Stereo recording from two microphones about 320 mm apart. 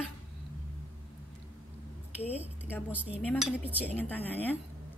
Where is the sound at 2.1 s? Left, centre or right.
Centre.